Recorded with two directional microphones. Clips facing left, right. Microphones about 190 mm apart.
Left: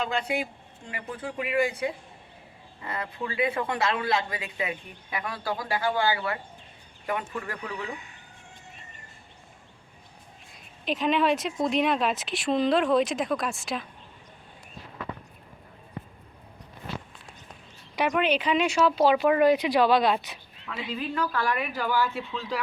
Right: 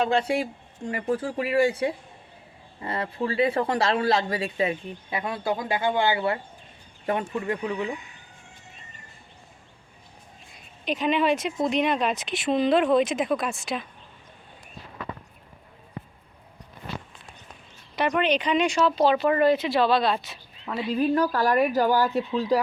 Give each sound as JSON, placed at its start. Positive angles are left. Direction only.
{"t": 0.0, "sound": "speech", "side_deg": -30}
{"t": 10.5, "sound": "speech", "side_deg": 0}
{"t": 17.9, "sound": "speech", "side_deg": 10}
{"t": 20.9, "sound": "speech", "side_deg": -40}